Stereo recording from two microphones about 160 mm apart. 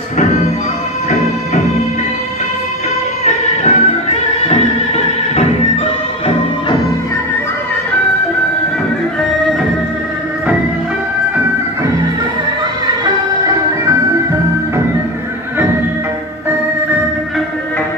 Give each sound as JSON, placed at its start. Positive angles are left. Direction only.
{"t": 3.3, "sound": "music", "side_deg": 45}